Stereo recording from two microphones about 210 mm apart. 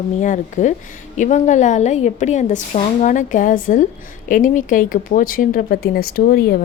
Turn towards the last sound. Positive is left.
turn(degrees=45)  # may be behind; listen again after turning